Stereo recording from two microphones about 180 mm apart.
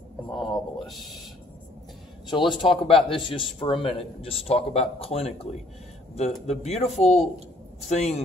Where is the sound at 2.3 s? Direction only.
25° left (ahead or behind).